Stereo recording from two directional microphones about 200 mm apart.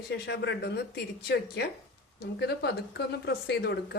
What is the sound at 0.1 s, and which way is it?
Speech, 55° left (ahead or behind).